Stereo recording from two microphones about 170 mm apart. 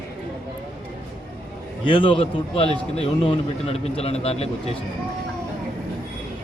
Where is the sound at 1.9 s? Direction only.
30° left (ahead or behind).